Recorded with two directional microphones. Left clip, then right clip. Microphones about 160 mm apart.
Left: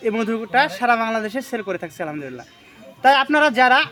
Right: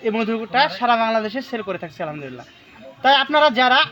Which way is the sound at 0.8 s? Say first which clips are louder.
Right 1 dB; 55° left (ahead or behind).